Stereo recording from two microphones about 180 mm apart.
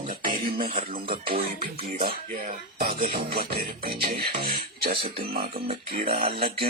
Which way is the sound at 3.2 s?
60° right (ahead or behind).